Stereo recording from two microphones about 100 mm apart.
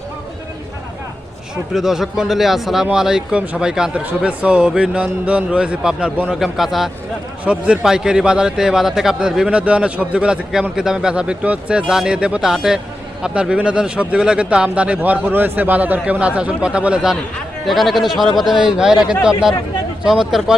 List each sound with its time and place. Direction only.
1.7 s a man's voice: 5° right (ahead or behind)
20.1 s speech: 5° right (ahead or behind)